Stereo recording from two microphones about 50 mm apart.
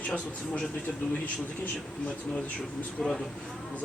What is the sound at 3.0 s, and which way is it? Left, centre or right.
Speech, centre.